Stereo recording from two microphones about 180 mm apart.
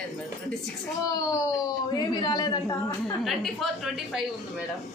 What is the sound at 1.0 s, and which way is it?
A man's voice, 20° left (ahead or behind).